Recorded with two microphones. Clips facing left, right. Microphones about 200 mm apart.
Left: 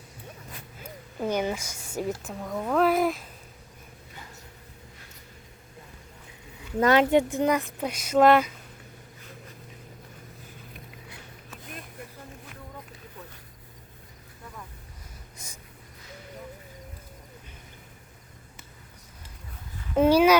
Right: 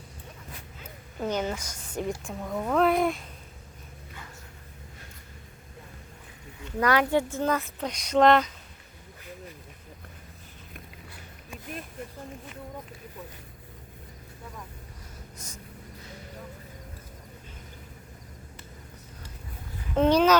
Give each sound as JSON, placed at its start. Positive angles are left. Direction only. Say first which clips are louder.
{"t": 1.2, "sound": "a woman's voice", "louder": "left 2 dB", "side_deg": 10}
{"t": 6.7, "sound": "speech", "louder": "left 4 dB", "side_deg": 25}
{"t": 20.0, "sound": "a sound", "louder": "left 2 dB", "side_deg": 10}